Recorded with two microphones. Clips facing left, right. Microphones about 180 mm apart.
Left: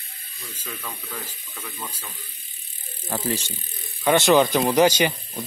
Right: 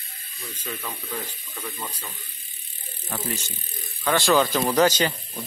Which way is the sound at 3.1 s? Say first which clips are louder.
Left 4 dB; 30° left (ahead or behind).